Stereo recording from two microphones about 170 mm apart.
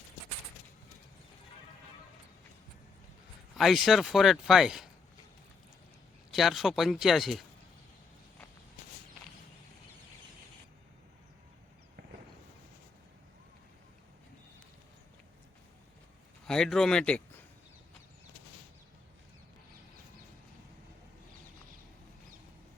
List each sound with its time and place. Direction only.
3.6 s speech: centre (ahead or behind)
6.3 s speech: centre (ahead or behind)
16.5 s speech: 5° left (ahead or behind)